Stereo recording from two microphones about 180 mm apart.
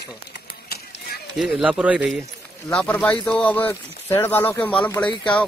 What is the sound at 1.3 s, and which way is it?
Speech, 5° right (ahead or behind).